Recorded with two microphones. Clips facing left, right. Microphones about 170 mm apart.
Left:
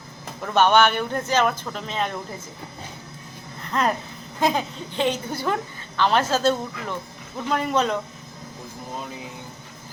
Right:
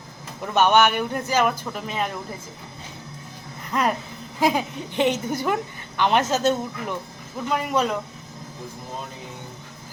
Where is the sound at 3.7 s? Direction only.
10° right (ahead or behind).